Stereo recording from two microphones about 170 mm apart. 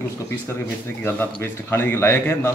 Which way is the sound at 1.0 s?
15° left (ahead or behind).